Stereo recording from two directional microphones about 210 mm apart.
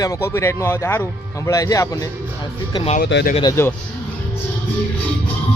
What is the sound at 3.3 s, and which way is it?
Speech, 20° left (ahead or behind).